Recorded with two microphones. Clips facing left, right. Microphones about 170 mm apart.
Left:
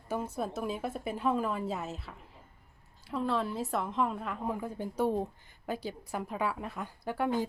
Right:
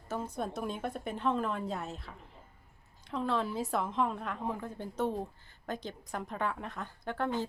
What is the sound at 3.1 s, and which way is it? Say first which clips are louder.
A woman's voice: left 1 dB; centre (ahead or behind).